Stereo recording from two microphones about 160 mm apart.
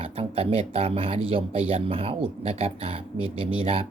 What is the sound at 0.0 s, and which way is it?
Speech, 35° right (ahead or behind).